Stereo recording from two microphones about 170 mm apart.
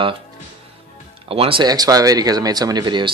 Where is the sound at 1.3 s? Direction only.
35° right (ahead or behind).